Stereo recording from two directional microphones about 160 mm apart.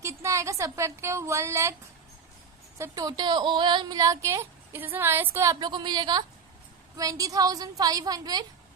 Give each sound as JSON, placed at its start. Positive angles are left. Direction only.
{"t": 0.0, "sound": "a woman's voice", "side_deg": -20}
{"t": 2.7, "sound": "speech", "side_deg": -20}
{"t": 5.5, "sound": "speech", "side_deg": -30}